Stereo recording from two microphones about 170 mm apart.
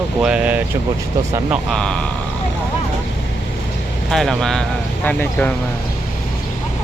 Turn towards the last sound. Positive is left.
turn(degrees=10)  # may be behind; listen again after turning